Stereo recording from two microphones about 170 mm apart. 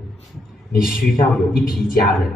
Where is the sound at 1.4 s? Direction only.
Centre (ahead or behind).